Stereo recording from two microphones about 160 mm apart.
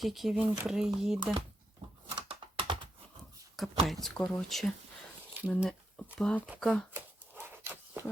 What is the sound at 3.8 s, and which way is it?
Speech, centre (ahead or behind).